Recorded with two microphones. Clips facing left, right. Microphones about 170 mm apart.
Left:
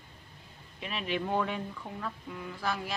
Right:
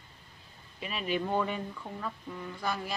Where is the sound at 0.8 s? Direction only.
Centre (ahead or behind).